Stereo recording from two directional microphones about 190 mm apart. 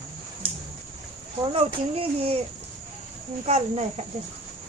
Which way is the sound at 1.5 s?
30° right (ahead or behind).